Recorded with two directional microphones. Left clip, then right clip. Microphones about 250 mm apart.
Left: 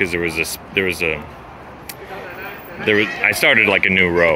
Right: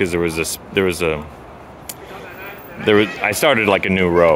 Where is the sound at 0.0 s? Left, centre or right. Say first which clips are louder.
Even; centre.